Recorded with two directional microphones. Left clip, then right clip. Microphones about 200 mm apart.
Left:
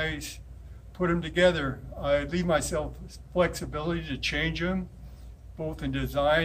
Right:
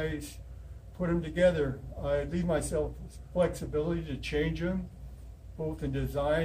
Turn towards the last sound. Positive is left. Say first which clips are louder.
# left 5 dB
turn(degrees=-15)  # may be behind; listen again after turning